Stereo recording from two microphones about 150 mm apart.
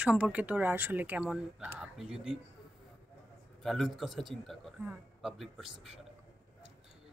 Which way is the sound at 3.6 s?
Centre (ahead or behind).